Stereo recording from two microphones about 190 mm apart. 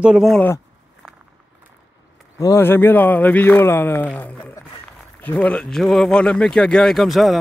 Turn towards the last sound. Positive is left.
turn(degrees=0)  # may be behind; listen again after turning